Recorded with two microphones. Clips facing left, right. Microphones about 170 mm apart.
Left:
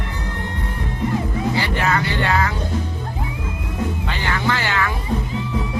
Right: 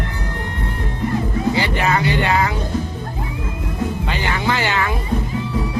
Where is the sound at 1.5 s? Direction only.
20° right (ahead or behind).